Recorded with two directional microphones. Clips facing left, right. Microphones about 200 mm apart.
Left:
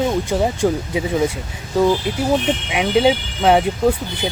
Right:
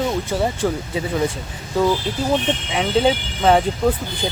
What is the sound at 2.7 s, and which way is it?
Speech, 10° left (ahead or behind).